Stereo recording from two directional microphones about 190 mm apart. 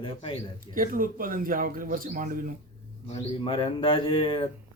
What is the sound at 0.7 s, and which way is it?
Speech, 45° right (ahead or behind).